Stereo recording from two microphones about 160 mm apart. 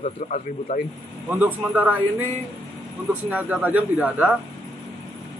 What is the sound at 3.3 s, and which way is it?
A man's voice, 10° right (ahead or behind).